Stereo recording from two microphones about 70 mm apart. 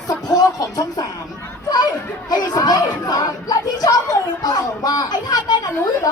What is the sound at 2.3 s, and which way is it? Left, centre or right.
Speech, left.